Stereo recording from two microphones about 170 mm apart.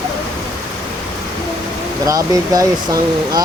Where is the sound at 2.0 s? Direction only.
20° right (ahead or behind).